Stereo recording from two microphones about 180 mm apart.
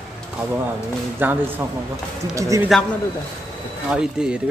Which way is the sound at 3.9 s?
5° right (ahead or behind).